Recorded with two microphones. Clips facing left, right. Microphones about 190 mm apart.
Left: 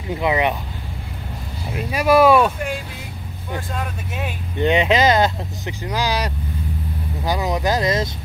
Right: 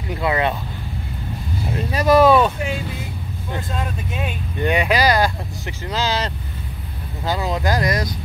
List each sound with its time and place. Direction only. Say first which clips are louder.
0.1 s speech: left 1 dB; 15° left (ahead or behind)
1.8 s speech: even; 10° left (ahead or behind)
3.7 s speech: right 1 dB; centre (ahead or behind)
4.6 s speech: left 2 dB; 20° left (ahead or behind)